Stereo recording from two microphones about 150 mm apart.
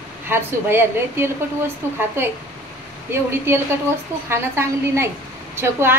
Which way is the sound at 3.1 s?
15° right (ahead or behind).